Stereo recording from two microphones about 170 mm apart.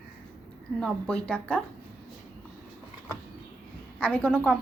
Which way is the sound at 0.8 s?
5° left (ahead or behind).